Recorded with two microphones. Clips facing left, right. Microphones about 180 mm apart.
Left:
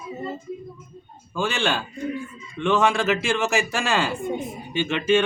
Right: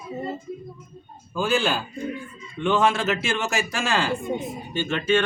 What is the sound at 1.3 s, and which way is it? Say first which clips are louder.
A man's voice: right 1 dB; 5° right (ahead or behind).